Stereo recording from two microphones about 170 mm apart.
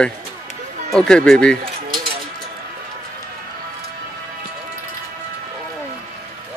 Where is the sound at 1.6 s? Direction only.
55° right (ahead or behind).